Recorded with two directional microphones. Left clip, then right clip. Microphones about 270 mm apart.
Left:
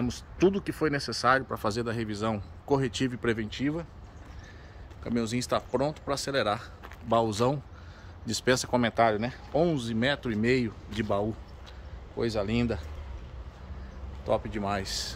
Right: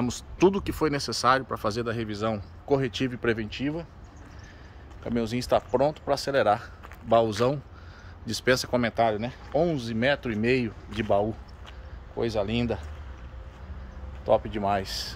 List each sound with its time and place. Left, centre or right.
0.0 s speech: centre
1.5 s speech: centre
5.0 s speech: centre
14.2 s speech: centre